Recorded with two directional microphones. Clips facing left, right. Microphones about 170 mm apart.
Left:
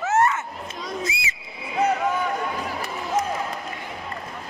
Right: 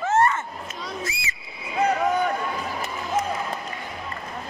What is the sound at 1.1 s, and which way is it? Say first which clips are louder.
Frog: left 4 dB; 20° left (ahead or behind).